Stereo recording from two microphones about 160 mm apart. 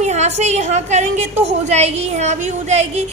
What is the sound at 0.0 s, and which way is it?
A woman's voice, 45° right (ahead or behind).